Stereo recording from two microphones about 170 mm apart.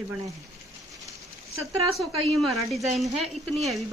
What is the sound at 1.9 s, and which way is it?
Speech, centre (ahead or behind).